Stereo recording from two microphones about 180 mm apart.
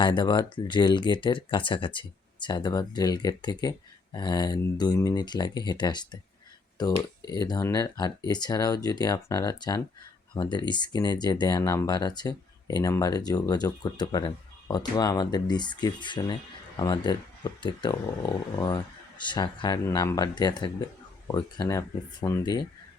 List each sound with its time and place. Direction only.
0.0 s speech: 25° left (ahead or behind)